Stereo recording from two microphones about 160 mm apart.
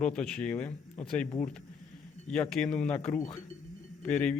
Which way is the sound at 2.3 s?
5° left (ahead or behind).